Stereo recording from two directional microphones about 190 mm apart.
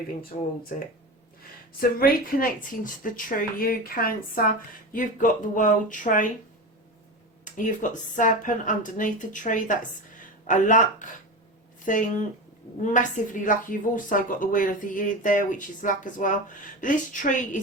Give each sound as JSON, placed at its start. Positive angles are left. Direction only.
{"t": 1.8, "sound": "a woman's voice", "side_deg": 50}
{"t": 7.4, "sound": "a woman's voice", "side_deg": 45}